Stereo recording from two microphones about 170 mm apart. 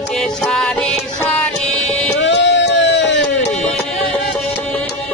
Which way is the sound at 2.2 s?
90° left.